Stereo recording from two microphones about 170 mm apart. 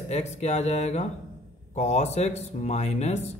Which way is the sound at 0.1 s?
40° left (ahead or behind).